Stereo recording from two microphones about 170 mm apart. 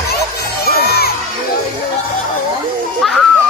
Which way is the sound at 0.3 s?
65° left (ahead or behind).